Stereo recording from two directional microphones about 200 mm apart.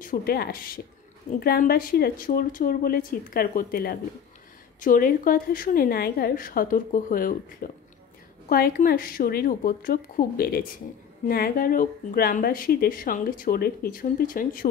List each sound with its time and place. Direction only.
0.0 s speech: 45° left (ahead or behind)